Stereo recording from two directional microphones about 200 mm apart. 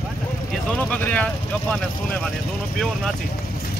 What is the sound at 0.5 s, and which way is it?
Speech, 5° left (ahead or behind).